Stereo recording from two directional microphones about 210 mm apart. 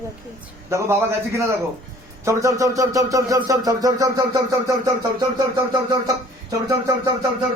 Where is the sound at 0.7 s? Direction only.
15° right (ahead or behind).